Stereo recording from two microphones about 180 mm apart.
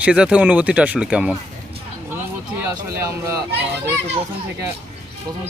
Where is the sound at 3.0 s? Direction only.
15° right (ahead or behind).